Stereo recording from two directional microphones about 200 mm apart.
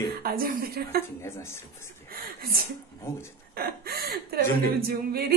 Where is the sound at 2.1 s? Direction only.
50° right (ahead or behind).